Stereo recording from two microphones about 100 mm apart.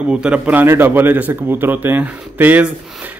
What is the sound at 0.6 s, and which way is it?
A man's voice, 20° right (ahead or behind).